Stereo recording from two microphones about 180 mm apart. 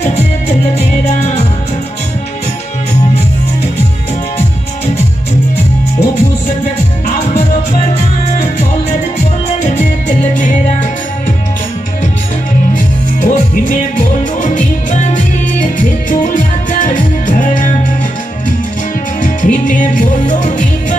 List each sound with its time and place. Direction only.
0.0 s music: 40° left (ahead or behind)
8.3 s music: 40° left (ahead or behind)
12.7 s music: 45° left (ahead or behind)
19.2 s music: 45° left (ahead or behind)